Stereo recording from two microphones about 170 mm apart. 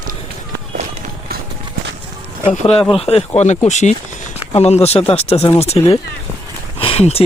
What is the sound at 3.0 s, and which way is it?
Speech, 35° left (ahead or behind).